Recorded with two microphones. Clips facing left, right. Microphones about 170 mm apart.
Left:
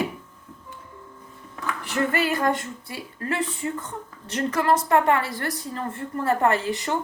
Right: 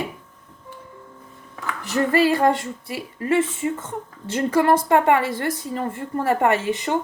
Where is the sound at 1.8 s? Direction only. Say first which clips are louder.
Right 6 dB; 35° right (ahead or behind).